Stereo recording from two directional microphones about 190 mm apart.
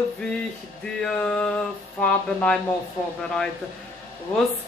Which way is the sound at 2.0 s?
5° left (ahead or behind).